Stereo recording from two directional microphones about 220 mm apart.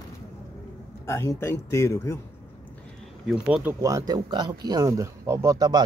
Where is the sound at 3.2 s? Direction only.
5° right (ahead or behind).